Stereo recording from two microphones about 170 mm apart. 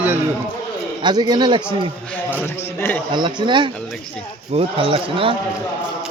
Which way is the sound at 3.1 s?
25° right (ahead or behind).